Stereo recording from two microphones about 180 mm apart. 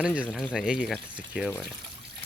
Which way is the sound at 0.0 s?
5° right (ahead or behind).